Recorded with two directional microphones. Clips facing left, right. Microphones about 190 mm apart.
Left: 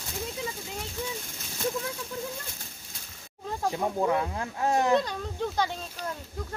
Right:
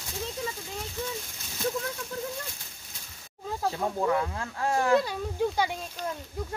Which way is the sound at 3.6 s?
15° left (ahead or behind).